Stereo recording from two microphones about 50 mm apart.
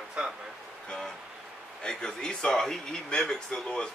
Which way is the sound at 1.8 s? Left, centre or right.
Centre.